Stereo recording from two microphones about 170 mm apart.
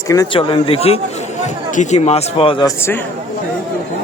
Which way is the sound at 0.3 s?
30° left (ahead or behind).